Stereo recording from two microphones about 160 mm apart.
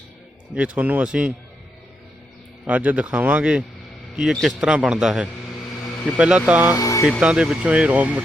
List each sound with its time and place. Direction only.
0.5 s speech: 10° right (ahead or behind)
2.6 s a man's voice: 10° right (ahead or behind)
6.7 s speech: 20° left (ahead or behind)
7.2 s speech: 5° right (ahead or behind)